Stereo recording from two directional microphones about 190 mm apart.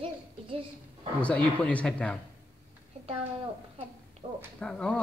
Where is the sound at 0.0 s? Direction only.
30° right (ahead or behind).